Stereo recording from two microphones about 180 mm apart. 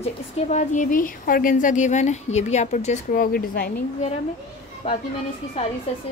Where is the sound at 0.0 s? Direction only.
40° left (ahead or behind); by 3.7 s 55° left (ahead or behind).